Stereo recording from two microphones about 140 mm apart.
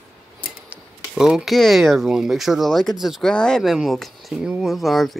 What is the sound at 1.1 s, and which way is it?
Speech, 5° right (ahead or behind).